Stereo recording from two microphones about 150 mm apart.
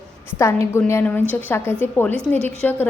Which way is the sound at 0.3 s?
20° left (ahead or behind).